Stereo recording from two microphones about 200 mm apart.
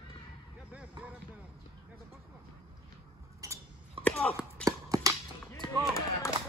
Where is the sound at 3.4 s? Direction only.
15° right (ahead or behind).